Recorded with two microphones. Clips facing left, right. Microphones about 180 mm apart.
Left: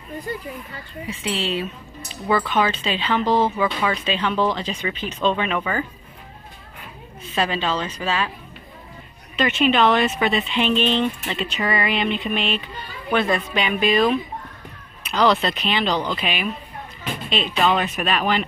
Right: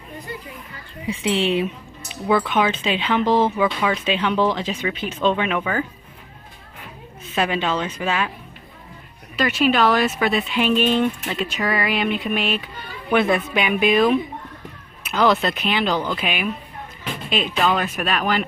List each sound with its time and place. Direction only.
1.4 s speech: 20° right (ahead or behind)
2.2 s speech: 10° right (ahead or behind)
7.3 s speech: 10° right (ahead or behind)
9.4 s speech: centre (ahead or behind)